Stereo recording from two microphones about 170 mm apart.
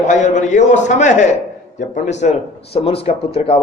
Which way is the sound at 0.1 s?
45° left (ahead or behind).